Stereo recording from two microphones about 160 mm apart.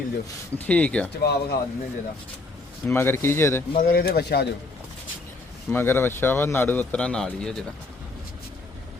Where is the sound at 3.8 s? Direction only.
65° left (ahead or behind); by 4.4 s 90° left.